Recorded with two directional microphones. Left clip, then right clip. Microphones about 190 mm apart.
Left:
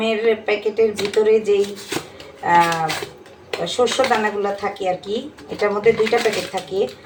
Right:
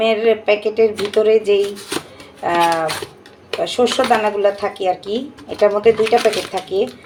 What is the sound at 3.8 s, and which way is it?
Speech, 40° right (ahead or behind).